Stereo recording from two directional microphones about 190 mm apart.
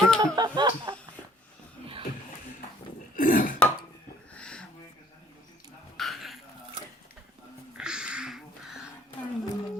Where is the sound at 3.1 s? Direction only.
45° left (ahead or behind).